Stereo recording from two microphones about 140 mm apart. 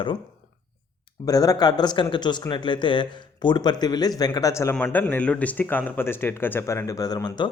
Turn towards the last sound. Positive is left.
turn(degrees=30)  # may be behind; listen again after turning